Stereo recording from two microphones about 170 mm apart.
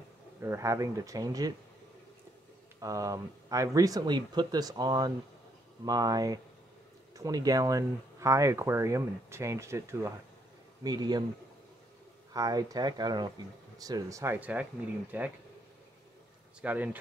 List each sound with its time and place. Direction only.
0.4 s speech: 15° right (ahead or behind)
2.8 s speech: 20° right (ahead or behind)
12.4 s speech: 20° right (ahead or behind)
16.6 s speech: 10° right (ahead or behind)